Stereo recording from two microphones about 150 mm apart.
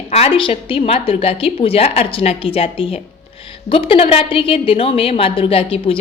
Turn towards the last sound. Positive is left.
turn(degrees=40)  # may be behind; listen again after turning